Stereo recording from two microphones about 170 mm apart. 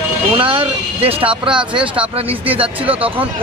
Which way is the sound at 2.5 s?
35° right (ahead or behind).